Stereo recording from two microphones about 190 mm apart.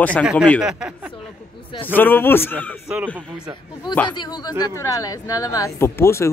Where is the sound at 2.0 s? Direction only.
10° left (ahead or behind).